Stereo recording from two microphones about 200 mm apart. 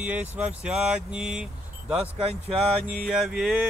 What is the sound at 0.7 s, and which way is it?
Mantra, 5° right (ahead or behind).